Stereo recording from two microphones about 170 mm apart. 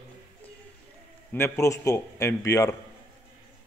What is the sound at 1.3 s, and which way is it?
A man's voice, 15° left (ahead or behind).